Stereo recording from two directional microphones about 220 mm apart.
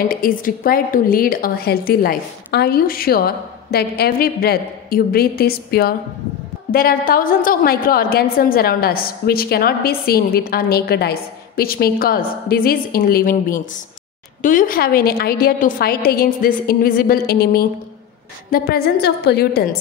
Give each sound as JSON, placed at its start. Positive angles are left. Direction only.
{"t": 0.1, "sound": "a woman's voice", "side_deg": 40}